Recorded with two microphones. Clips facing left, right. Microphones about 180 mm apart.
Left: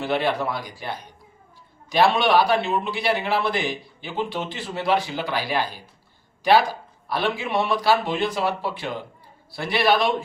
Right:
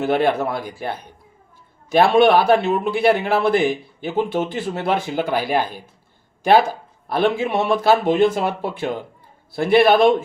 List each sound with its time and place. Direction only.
0.0 s a man's voice: 50° right (ahead or behind)